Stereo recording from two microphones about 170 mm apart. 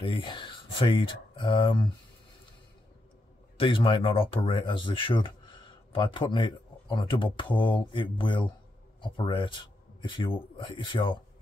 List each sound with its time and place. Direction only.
0.0 s speech: 30° left (ahead or behind)
3.5 s speech: 30° left (ahead or behind)